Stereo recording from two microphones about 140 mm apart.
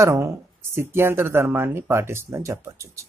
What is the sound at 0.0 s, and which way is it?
Speech, 20° right (ahead or behind).